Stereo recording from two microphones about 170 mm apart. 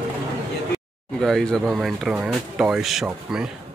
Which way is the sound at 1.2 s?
5° left (ahead or behind).